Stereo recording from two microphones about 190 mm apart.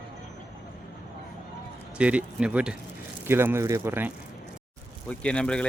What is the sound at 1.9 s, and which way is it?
Speech, 5° right (ahead or behind).